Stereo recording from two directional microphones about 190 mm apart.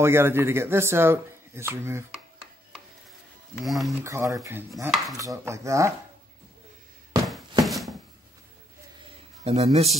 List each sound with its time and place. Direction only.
0.0 s a man's voice: 10° right (ahead or behind)
3.6 s speech: centre (ahead or behind)
4.0 s a man's voice: 15° right (ahead or behind)
7.6 s a sound: centre (ahead or behind)
9.4 s a man's voice: 35° right (ahead or behind)